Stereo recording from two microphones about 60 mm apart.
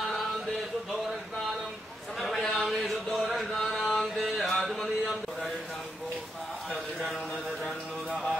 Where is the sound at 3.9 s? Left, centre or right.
Centre.